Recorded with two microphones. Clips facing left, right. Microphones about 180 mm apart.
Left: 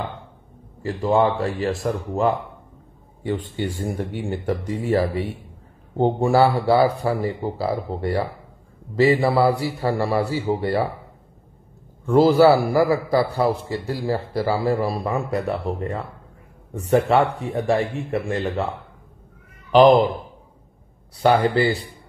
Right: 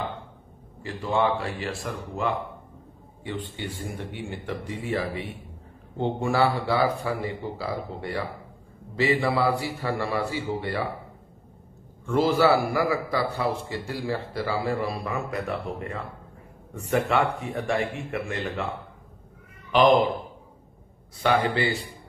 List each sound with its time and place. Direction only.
0.8 s a man's voice: 45° left (ahead or behind)
12.1 s a man's voice: 40° left (ahead or behind)
19.7 s a man's voice: 35° left (ahead or behind)
21.2 s a man's voice: 35° left (ahead or behind)